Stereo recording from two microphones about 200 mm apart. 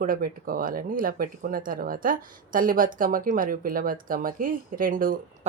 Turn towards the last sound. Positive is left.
turn(degrees=-45)  # may be behind; listen again after turning